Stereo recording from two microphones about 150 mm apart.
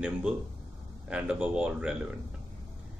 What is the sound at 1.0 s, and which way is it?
Speech, 5° right (ahead or behind).